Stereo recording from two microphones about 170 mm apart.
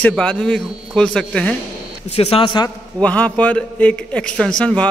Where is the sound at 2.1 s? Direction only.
35° left (ahead or behind).